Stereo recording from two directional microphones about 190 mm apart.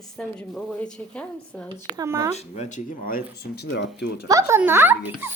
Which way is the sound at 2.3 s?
35° left (ahead or behind).